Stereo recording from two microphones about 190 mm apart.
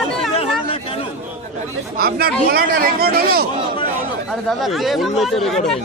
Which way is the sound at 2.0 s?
55° right (ahead or behind).